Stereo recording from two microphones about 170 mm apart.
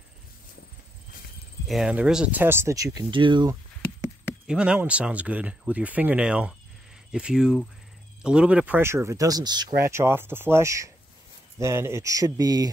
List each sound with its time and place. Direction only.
1.7 s speech: 5° right (ahead or behind); by 3.5 s 25° right (ahead or behind)
4.2 s speech: 5° right (ahead or behind); by 12.6 s 20° right (ahead or behind)